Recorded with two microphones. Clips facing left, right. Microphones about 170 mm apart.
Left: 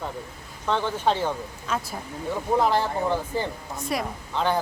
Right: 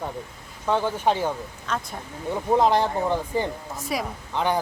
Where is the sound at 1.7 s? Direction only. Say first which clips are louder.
Even; 5° left (ahead or behind).